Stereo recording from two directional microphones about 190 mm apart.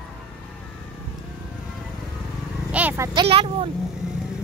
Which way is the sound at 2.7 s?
10° right (ahead or behind).